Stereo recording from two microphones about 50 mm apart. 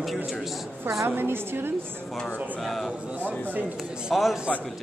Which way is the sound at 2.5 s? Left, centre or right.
Centre.